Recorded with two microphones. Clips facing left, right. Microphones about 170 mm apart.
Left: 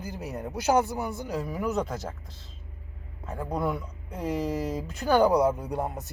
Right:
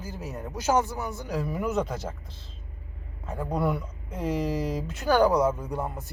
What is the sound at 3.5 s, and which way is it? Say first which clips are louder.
Speech: right 2 dB; centre (ahead or behind).